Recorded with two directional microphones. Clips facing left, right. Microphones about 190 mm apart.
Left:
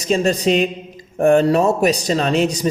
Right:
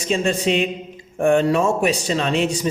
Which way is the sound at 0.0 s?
40° left (ahead or behind).